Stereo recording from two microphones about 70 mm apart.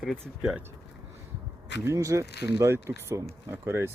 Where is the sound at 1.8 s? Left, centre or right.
Right.